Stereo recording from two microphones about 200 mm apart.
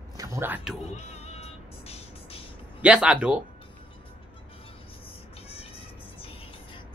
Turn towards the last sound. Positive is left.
turn(degrees=25)  # may be behind; listen again after turning